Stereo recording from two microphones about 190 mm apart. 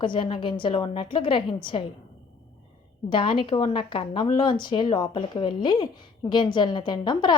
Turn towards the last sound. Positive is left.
turn(degrees=25)  # may be behind; listen again after turning